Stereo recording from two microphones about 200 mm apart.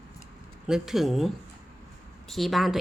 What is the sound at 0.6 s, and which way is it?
A woman's voice, centre (ahead or behind).